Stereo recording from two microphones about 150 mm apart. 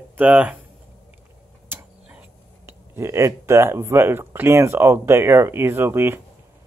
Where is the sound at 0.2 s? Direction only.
10° right (ahead or behind).